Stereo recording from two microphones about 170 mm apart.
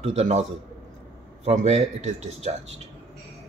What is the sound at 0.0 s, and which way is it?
Speech, 40° right (ahead or behind).